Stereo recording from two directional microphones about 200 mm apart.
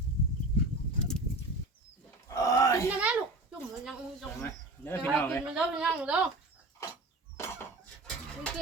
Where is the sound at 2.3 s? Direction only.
15° left (ahead or behind).